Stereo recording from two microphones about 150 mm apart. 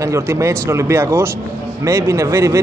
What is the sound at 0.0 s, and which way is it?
Speech, 20° right (ahead or behind).